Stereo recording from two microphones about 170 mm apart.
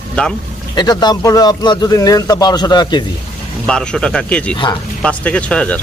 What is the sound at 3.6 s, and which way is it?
Speech, 5° left (ahead or behind).